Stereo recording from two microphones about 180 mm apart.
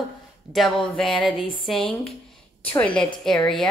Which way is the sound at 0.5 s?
Centre (ahead or behind).